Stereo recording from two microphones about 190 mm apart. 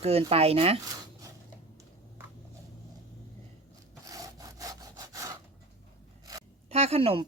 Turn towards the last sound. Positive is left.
turn(degrees=-30)  # may be behind; listen again after turning